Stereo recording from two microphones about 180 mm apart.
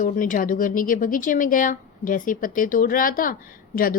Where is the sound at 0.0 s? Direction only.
50° left (ahead or behind).